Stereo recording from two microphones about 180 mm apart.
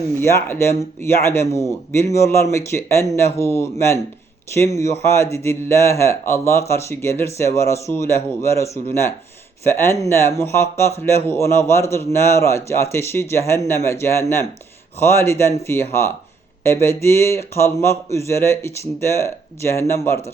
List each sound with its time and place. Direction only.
0.1 s speech: 15° left (ahead or behind)